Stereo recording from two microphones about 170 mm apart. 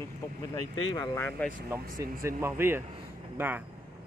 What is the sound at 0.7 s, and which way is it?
Speech, 25° left (ahead or behind).